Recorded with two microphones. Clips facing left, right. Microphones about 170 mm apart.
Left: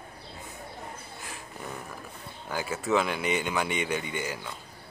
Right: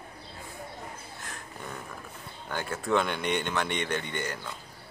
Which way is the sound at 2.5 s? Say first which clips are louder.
Left 1 dB; 5° left (ahead or behind).